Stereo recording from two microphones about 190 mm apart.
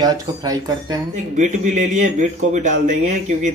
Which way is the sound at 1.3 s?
40° right (ahead or behind).